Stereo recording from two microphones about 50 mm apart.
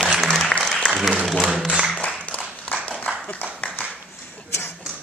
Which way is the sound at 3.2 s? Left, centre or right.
Left.